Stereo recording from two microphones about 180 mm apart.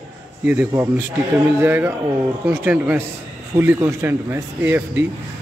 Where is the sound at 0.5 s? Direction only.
10° right (ahead or behind).